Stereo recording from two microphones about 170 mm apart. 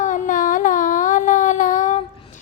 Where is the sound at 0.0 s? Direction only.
50° left (ahead or behind).